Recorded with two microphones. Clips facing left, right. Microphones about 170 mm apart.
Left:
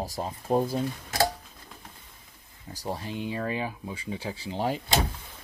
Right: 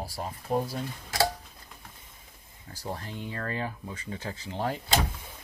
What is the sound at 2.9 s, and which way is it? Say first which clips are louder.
Speech: left 4 dB; 15° left (ahead or behind).